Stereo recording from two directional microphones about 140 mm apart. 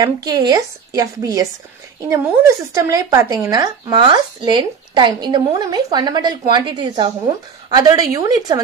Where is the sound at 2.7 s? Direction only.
25° right (ahead or behind).